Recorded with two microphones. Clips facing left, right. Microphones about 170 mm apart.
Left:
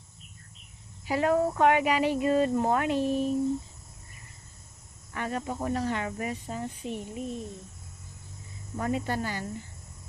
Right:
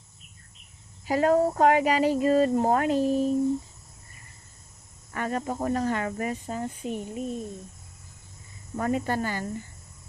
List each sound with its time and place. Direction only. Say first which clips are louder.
1.0 s speech: right 3 dB; 40° right (ahead or behind)
5.1 s speech: right 3 dB; 45° right (ahead or behind)
8.7 s speech: right 3 dB; 50° right (ahead or behind)